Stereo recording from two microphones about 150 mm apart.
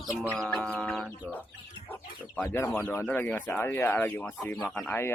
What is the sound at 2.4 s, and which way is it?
Speech, 15° left (ahead or behind).